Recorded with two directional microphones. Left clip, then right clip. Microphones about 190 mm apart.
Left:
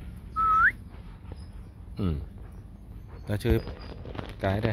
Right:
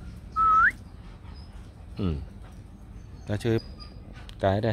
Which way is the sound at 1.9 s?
5° right (ahead or behind).